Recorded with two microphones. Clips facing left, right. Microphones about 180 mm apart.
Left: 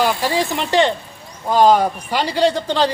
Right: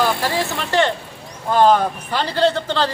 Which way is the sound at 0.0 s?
15° left (ahead or behind).